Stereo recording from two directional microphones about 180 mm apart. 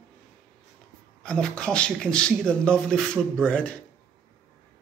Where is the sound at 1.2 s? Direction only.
5° left (ahead or behind).